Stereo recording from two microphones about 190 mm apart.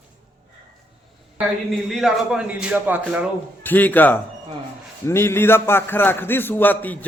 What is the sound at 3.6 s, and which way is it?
A man's voice, 10° left (ahead or behind).